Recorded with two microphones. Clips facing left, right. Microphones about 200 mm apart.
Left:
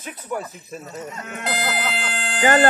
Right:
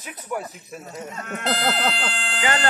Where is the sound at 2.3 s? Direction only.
45° left (ahead or behind).